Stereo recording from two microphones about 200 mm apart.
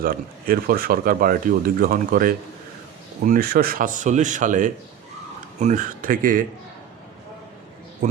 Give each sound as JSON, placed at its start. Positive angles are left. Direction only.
{"t": 0.0, "sound": "speech", "side_deg": -45}